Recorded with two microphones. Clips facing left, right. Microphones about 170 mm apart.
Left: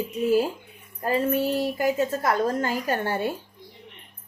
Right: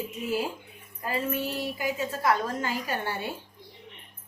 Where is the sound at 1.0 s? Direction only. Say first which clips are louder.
Left 7 dB; 40° left (ahead or behind).